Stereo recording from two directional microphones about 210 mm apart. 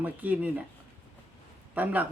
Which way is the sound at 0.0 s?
10° right (ahead or behind).